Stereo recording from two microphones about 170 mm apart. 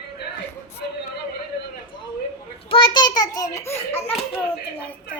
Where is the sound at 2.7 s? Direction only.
30° left (ahead or behind).